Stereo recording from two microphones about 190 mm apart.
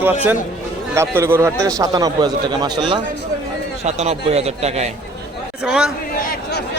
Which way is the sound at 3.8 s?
35° right (ahead or behind).